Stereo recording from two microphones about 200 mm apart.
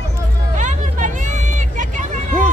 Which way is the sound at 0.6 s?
40° right (ahead or behind).